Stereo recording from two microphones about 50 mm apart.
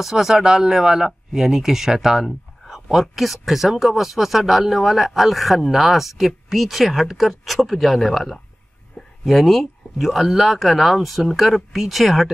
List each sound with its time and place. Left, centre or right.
0.0 s speech: centre